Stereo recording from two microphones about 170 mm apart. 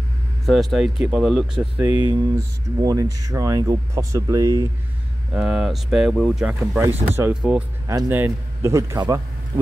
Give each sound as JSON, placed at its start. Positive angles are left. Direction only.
{"t": 0.5, "sound": "speech", "side_deg": 0}
{"t": 5.3, "sound": "speech", "side_deg": -5}